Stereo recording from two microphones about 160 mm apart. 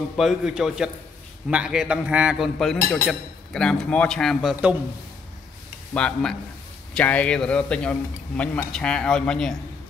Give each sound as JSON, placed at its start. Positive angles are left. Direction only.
{"t": 0.2, "sound": "speech", "side_deg": 0}
{"t": 5.9, "sound": "a man's voice", "side_deg": 5}